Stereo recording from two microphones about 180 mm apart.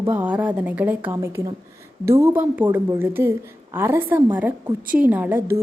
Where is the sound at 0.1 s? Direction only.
10° right (ahead or behind).